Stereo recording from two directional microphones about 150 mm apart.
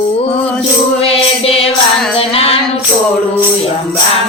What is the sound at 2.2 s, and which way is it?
Female singing, 40° left (ahead or behind).